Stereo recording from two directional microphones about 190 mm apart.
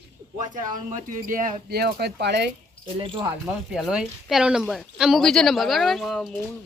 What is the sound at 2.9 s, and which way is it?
Speech, 25° right (ahead or behind).